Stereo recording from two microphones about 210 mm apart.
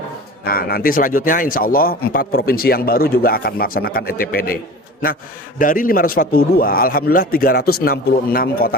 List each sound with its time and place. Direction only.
0.4 s a man's voice: 45° left (ahead or behind)